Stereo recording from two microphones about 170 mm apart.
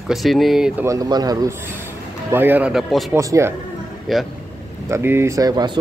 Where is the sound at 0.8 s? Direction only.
20° right (ahead or behind); by 3.1 s centre (ahead or behind).